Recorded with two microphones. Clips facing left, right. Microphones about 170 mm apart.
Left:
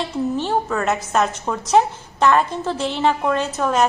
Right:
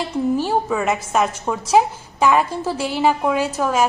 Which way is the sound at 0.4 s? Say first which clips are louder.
Right 1 dB; 10° right (ahead or behind).